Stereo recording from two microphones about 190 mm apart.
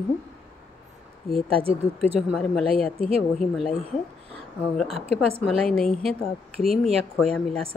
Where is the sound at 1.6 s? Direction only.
30° right (ahead or behind).